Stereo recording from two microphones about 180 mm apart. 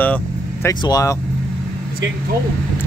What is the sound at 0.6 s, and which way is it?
Speech, 20° left (ahead or behind).